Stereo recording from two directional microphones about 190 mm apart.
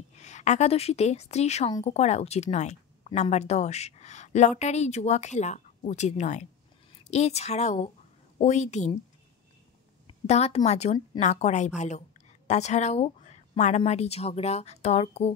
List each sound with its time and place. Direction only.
0.2 s a woman's voice: 40° left (ahead or behind)
10.0 s a woman's voice: 35° left (ahead or behind)